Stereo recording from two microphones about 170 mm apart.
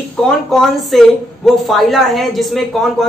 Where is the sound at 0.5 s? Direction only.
Centre (ahead or behind).